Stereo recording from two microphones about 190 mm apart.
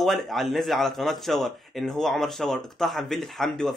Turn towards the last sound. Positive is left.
turn(degrees=0)  # may be behind; listen again after turning